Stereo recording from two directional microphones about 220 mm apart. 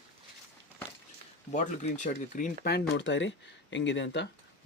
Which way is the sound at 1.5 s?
35° left (ahead or behind).